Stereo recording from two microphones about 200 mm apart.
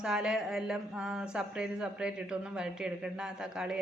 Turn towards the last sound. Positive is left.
turn(degrees=-5)  # may be behind; listen again after turning